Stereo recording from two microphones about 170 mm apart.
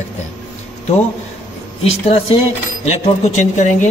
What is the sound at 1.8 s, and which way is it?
A man's voice, 35° left (ahead or behind).